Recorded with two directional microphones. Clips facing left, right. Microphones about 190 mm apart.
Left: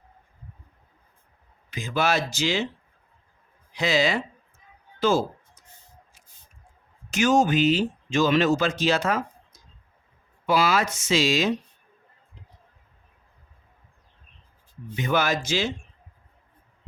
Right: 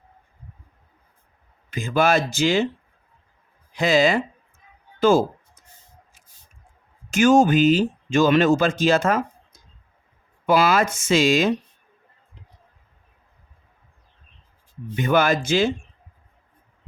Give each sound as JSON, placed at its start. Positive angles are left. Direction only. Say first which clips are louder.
{"t": 1.7, "sound": "speech", "louder": "right 5 dB", "side_deg": -50}
{"t": 3.7, "sound": "speech", "louder": "right 5 dB", "side_deg": -50}
{"t": 4.9, "sound": "music", "louder": "right 5 dB", "side_deg": -50}
{"t": 7.1, "sound": "speech", "louder": "right 5 dB", "side_deg": -50}
{"t": 14.9, "sound": "speech", "louder": "right 5 dB", "side_deg": -55}